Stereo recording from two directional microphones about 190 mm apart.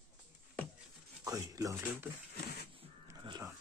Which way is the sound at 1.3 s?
20° right (ahead or behind).